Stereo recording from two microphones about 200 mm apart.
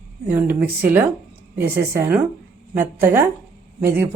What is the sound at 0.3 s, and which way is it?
Speech, 10° right (ahead or behind).